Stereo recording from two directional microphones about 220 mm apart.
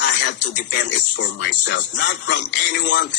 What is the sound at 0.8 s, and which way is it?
Speech, 50° left (ahead or behind).